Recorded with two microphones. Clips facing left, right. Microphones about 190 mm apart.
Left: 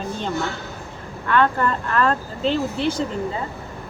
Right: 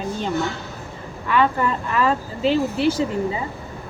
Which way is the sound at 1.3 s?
5° right (ahead or behind).